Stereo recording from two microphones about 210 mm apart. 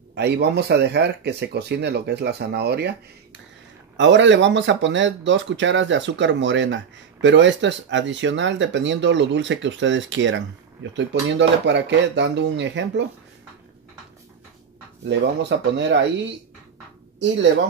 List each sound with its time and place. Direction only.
0.1 s speech: 50° right (ahead or behind)
15.0 s speech: 55° right (ahead or behind)